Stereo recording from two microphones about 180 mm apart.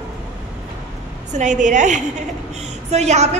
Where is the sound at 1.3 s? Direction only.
45° right (ahead or behind).